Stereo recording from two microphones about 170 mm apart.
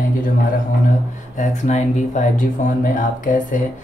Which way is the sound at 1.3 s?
45° left (ahead or behind).